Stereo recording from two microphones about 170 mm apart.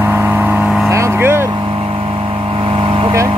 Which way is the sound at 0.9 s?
15° right (ahead or behind).